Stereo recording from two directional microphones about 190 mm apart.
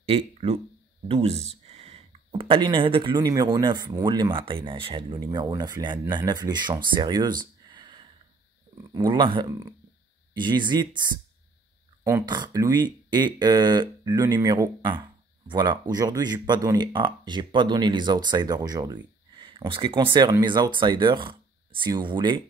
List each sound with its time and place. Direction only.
0.0 s speech: 30° right (ahead or behind)
12.0 s speech: 15° right (ahead or behind)